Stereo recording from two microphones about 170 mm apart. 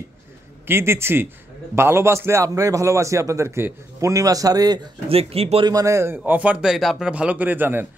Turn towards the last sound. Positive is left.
turn(degrees=-10)  # may be behind; listen again after turning